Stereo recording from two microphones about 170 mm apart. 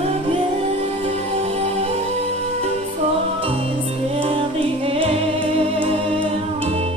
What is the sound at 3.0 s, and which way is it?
Music, 35° right (ahead or behind).